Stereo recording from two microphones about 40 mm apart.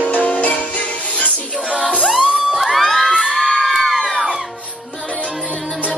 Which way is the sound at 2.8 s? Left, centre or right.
Centre.